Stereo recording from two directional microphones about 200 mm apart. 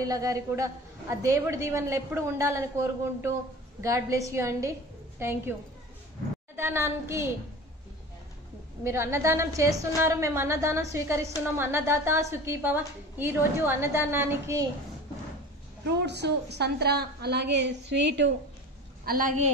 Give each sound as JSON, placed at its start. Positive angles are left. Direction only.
{"t": 0.0, "sound": "a woman's voice", "side_deg": -15}
{"t": 6.5, "sound": "a woman's voice", "side_deg": -10}
{"t": 8.8, "sound": "a woman's voice", "side_deg": -15}
{"t": 15.8, "sound": "a woman's voice", "side_deg": -60}
{"t": 19.0, "sound": "a woman's voice", "side_deg": -40}